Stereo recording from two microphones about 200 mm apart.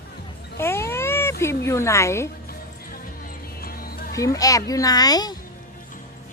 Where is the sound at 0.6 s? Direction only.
15° left (ahead or behind).